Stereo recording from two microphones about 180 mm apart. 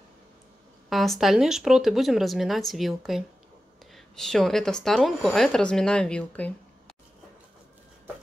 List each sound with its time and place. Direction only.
0.8 s speech: centre (ahead or behind)